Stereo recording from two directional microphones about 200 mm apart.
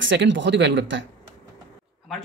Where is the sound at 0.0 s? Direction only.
65° right (ahead or behind).